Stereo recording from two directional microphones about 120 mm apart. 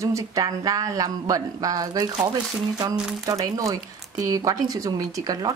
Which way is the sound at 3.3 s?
30° right (ahead or behind).